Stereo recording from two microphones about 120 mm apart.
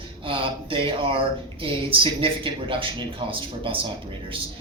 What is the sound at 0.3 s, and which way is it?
A man's voice, 45° right (ahead or behind).